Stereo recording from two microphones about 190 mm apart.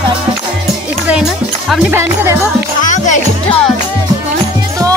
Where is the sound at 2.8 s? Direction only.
40° left (ahead or behind).